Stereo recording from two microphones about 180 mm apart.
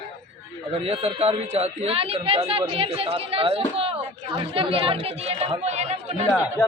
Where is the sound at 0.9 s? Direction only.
35° right (ahead or behind).